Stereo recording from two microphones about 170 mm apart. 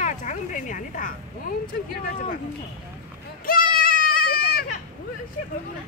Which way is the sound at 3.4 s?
55° left (ahead or behind).